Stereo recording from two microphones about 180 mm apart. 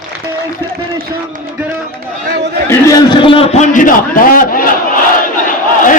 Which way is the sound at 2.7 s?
20° left (ahead or behind).